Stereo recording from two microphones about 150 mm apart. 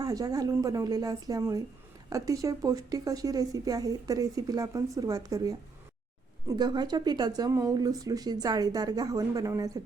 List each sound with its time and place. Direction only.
0.0 s speech: 25° right (ahead or behind)
6.6 s speech: 30° right (ahead or behind)